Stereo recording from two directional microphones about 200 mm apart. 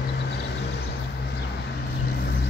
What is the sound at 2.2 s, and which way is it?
Vehicle, 55° left (ahead or behind).